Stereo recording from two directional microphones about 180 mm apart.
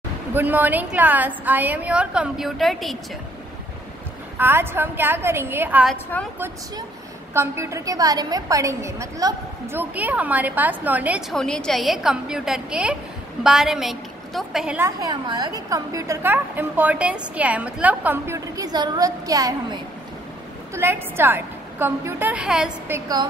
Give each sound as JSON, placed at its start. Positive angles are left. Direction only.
{"t": 0.3, "sound": "a woman's voice", "side_deg": -10}
{"t": 4.4, "sound": "a woman's voice", "side_deg": -10}
{"t": 7.3, "sound": "a woman's voice", "side_deg": -15}
{"t": 14.9, "sound": "a woman's voice", "side_deg": -20}
{"t": 22.9, "sound": "a woman's voice", "side_deg": -20}